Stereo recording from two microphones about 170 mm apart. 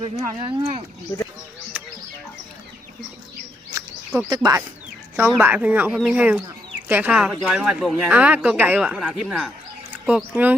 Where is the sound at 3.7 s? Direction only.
20° right (ahead or behind).